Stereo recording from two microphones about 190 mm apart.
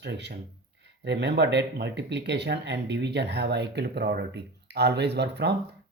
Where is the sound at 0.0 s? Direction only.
65° right (ahead or behind).